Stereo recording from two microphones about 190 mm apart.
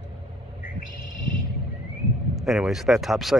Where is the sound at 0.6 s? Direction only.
45° left (ahead or behind).